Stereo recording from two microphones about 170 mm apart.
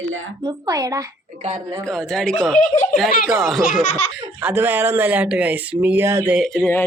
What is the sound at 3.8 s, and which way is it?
Laughter, 50° left (ahead or behind).